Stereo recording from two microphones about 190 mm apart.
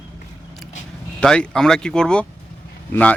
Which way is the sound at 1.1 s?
5° left (ahead or behind).